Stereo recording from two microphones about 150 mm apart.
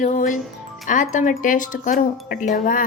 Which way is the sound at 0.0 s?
60° left (ahead or behind).